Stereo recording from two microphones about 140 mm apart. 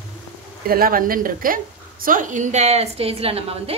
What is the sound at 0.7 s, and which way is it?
A woman's voice, 90° right.